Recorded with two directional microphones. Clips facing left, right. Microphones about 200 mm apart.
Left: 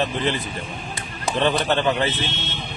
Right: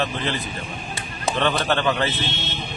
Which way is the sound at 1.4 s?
20° left (ahead or behind).